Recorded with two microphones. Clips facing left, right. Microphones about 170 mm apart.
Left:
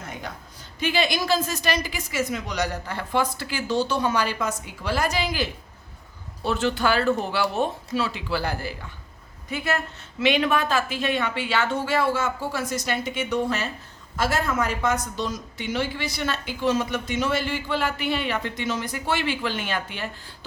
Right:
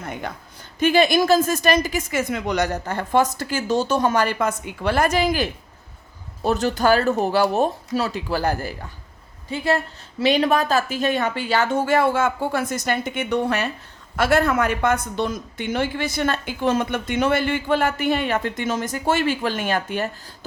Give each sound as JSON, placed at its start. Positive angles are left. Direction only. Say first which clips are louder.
{"t": 0.0, "sound": "a sound", "louder": "right 5 dB", "side_deg": -60}
{"t": 0.8, "sound": "a woman's voice", "louder": "right 7 dB", "side_deg": -50}
{"t": 9.5, "sound": "a woman's voice", "louder": "right 5 dB", "side_deg": -30}